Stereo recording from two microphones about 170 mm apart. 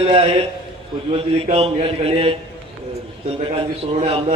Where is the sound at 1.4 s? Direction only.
35° right (ahead or behind).